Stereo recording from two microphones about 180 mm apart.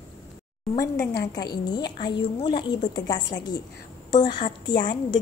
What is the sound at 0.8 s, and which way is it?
Speech, 15° left (ahead or behind).